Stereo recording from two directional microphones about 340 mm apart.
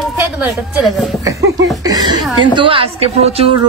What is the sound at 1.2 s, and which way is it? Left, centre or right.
Speech, centre.